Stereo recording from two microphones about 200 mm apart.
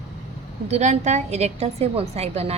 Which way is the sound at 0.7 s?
35° right (ahead or behind).